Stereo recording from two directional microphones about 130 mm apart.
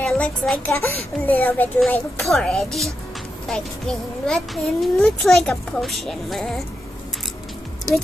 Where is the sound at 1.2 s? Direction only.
15° left (ahead or behind).